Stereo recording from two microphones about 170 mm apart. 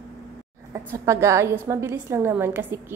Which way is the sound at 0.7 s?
15° right (ahead or behind).